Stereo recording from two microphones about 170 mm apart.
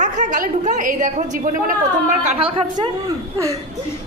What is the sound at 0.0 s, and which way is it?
A woman's voice, 45° right (ahead or behind).